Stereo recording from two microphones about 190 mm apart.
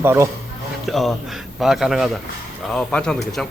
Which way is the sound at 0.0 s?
15° right (ahead or behind).